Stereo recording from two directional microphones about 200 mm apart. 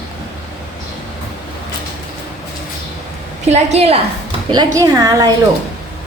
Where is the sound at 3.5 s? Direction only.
30° right (ahead or behind).